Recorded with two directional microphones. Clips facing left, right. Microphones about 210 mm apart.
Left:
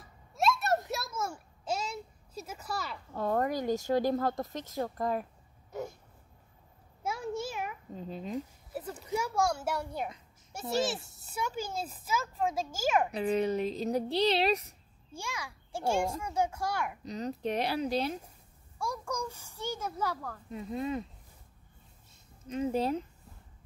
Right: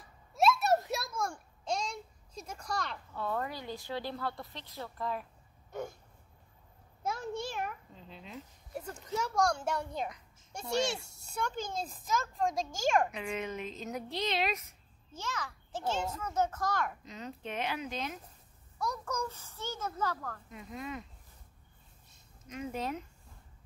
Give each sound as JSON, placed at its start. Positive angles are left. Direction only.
{"t": 0.3, "sound": "a sound", "side_deg": 0}
{"t": 3.1, "sound": "speech", "side_deg": 40}
{"t": 5.7, "sound": "hiccup", "side_deg": 0}
{"t": 7.0, "sound": "a sound", "side_deg": 5}
{"t": 7.9, "sound": "speech", "side_deg": 45}
{"t": 9.0, "sound": "a child's voice", "side_deg": 10}
{"t": 13.1, "sound": "speech", "side_deg": 35}
{"t": 15.1, "sound": "a child's voice", "side_deg": 10}
{"t": 17.0, "sound": "speech", "side_deg": 35}
{"t": 18.8, "sound": "a child's voice", "side_deg": 10}
{"t": 20.4, "sound": "speech", "side_deg": 30}
{"t": 22.5, "sound": "speech", "side_deg": 30}